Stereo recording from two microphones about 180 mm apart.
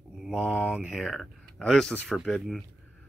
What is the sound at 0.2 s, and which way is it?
Speech, 5° right (ahead or behind).